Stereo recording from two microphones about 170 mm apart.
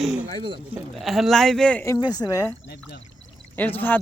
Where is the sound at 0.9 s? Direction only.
Centre (ahead or behind).